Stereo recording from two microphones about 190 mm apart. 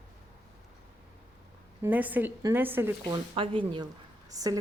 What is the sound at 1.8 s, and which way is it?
A woman's voice, 10° right (ahead or behind).